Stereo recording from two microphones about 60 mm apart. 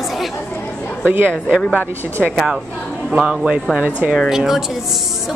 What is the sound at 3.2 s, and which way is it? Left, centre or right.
A woman's voice, centre.